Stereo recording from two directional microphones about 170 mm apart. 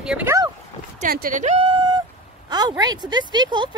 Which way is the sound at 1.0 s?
55° right (ahead or behind).